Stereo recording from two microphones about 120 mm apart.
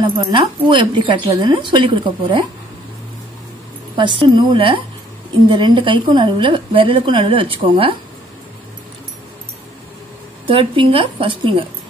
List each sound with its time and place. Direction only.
0.3 s speech: 45° right (ahead or behind)
3.9 s a woman's voice: 40° right (ahead or behind)
10.4 s a woman's voice: 45° right (ahead or behind)